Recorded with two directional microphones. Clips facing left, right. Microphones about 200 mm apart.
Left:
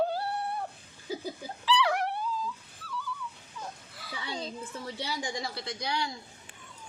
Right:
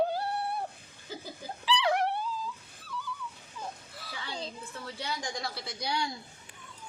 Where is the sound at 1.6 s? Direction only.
20° right (ahead or behind).